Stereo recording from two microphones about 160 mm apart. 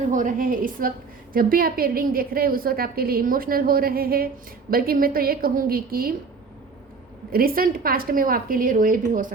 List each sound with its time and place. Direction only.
0.1 s a woman's voice: 55° right (ahead or behind)
7.3 s a woman's voice: 65° right (ahead or behind)